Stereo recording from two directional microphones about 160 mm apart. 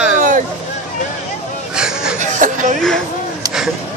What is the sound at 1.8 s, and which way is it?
Chicken, 5° right (ahead or behind).